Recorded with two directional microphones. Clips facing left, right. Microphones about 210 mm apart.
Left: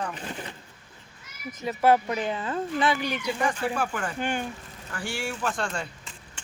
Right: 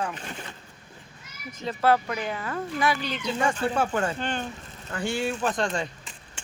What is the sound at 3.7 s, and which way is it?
Speech, 25° right (ahead or behind).